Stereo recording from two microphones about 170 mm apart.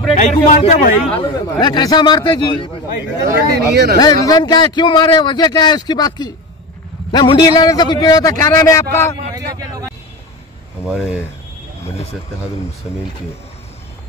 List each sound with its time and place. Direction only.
0.1 s a man's voice: 40° left (ahead or behind)
1.2 s speech: 25° left (ahead or behind)
3.2 s speech: 75° right (ahead or behind)
4.0 s speech: 25° left (ahead or behind)
9.3 s vehicle: 20° right (ahead or behind)
10.9 s speech: 5° right (ahead or behind)
12.9 s speech: 5° right (ahead or behind)